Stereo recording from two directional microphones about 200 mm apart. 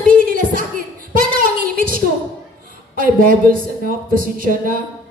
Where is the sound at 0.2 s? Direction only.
45° right (ahead or behind).